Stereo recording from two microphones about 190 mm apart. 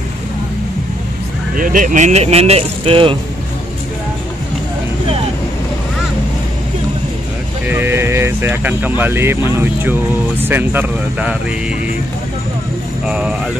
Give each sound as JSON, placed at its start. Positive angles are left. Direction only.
{"t": 1.6, "sound": "speech", "side_deg": -45}
{"t": 7.7, "sound": "speech", "side_deg": -10}
{"t": 13.0, "sound": "speech", "side_deg": -5}